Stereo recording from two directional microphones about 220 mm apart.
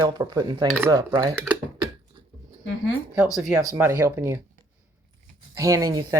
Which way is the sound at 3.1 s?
5° right (ahead or behind).